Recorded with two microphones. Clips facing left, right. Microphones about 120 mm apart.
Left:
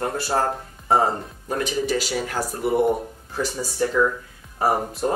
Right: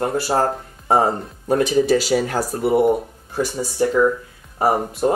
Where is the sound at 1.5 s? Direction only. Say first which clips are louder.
Right 8 dB; 40° right (ahead or behind).